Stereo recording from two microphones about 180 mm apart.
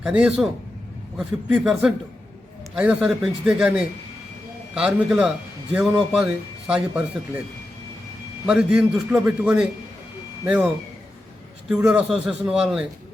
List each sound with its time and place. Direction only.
0.0 s a man's voice: 5° right (ahead or behind)
8.4 s a man's voice: 5° right (ahead or behind)
11.9 s a man's voice: 5° right (ahead or behind)